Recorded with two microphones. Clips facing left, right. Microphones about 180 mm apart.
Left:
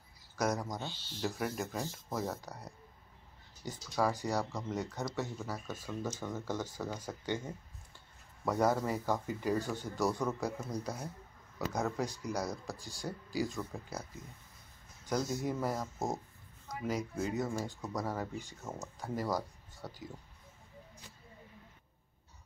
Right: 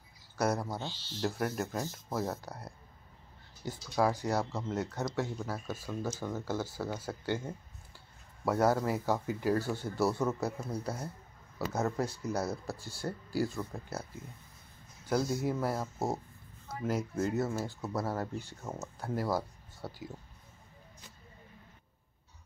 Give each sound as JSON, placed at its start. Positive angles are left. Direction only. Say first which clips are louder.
{"t": 0.4, "sound": "speech", "louder": "right 2 dB", "side_deg": -10}
{"t": 3.6, "sound": "speech", "louder": "right 3 dB", "side_deg": -10}
{"t": 12.6, "sound": "speech", "louder": "right 3 dB", "side_deg": 15}
{"t": 13.6, "sound": "speech", "louder": "right 2 dB", "side_deg": -5}